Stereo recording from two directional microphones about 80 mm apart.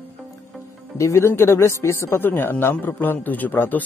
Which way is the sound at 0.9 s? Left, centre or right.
Left.